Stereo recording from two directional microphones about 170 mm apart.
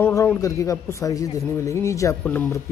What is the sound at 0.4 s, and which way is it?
A man's voice, 20° left (ahead or behind).